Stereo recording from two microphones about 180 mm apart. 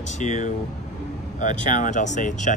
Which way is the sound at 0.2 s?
40° left (ahead or behind).